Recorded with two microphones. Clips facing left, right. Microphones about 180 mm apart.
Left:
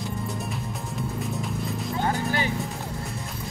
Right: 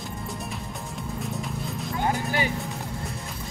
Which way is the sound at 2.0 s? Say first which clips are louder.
Right 1 dB; 15° right (ahead or behind).